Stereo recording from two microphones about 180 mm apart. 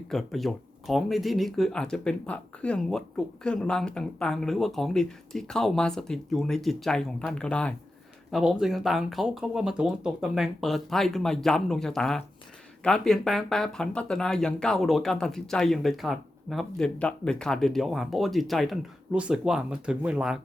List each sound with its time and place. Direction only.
0.1 s speech: centre (ahead or behind)